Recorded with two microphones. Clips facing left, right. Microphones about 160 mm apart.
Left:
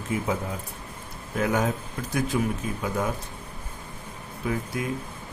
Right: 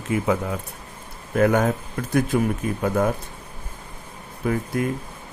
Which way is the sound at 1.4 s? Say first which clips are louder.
Right 6 dB; 55° right (ahead or behind).